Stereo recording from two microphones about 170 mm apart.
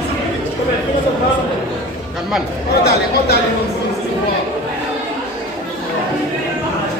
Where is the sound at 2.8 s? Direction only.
70° left (ahead or behind).